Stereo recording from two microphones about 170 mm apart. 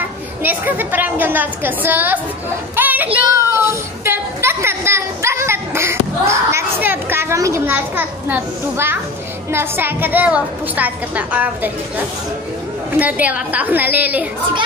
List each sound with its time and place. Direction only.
0.4 s a woman's voice: 10° right (ahead or behind)
2.7 s a sound: 10° right (ahead or behind)
9.5 s a woman's voice: 15° right (ahead or behind)
13.0 s a woman's voice: 10° right (ahead or behind)